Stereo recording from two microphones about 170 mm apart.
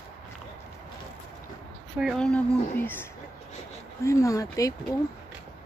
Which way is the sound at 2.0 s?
5° left (ahead or behind).